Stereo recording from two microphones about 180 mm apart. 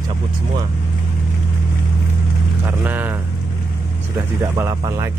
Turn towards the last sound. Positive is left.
turn(degrees=-20)  # may be behind; listen again after turning